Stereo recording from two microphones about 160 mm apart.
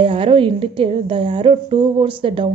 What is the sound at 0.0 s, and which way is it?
A woman's voice, 35° right (ahead or behind).